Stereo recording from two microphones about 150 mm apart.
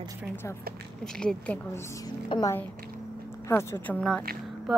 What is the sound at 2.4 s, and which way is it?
A woman's voice, 20° left (ahead or behind).